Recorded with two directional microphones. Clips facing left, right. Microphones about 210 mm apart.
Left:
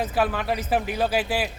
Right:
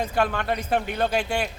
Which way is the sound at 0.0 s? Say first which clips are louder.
Even; 5° left (ahead or behind).